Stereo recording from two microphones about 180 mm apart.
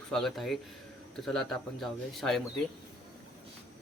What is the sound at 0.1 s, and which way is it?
A man's voice, centre (ahead or behind).